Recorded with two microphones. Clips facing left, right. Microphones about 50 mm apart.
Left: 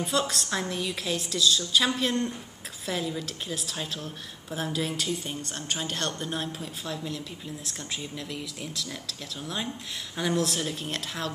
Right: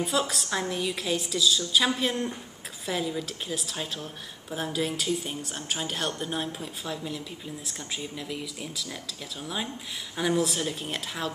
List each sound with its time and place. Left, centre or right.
0.0 s speech: centre